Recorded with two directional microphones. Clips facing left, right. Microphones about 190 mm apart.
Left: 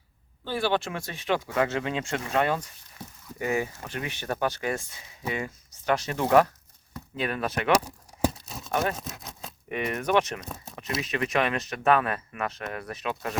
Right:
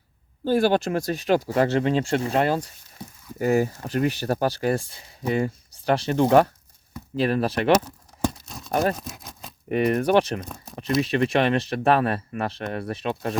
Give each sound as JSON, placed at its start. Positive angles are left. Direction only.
{"t": 0.4, "sound": "speech", "side_deg": -45}
{"t": 3.0, "sound": "speech", "side_deg": -10}
{"t": 3.3, "sound": "speech", "side_deg": -40}
{"t": 7.7, "sound": "tearing", "side_deg": 10}
{"t": 8.7, "sound": "speech", "side_deg": -35}
{"t": 9.0, "sound": "a sound", "side_deg": 0}
{"t": 9.6, "sound": "speech", "side_deg": -35}